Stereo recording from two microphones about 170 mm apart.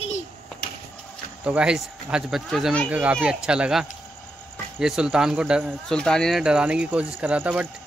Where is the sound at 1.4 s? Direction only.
5° right (ahead or behind).